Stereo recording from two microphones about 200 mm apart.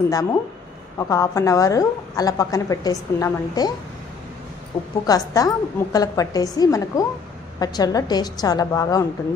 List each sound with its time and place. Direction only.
0.1 s a woman's voice: 15° left (ahead or behind)
5.0 s a woman's voice: 20° left (ahead or behind)